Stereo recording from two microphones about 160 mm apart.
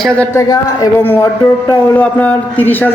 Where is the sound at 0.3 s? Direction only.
20° left (ahead or behind).